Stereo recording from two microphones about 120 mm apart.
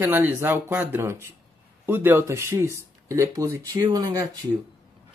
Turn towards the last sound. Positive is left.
turn(degrees=-35)  # may be behind; listen again after turning